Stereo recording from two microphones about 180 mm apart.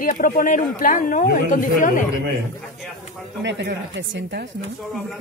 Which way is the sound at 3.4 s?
75° right (ahead or behind).